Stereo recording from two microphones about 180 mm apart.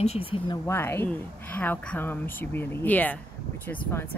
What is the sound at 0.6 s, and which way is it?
A woman's voice, 15° left (ahead or behind).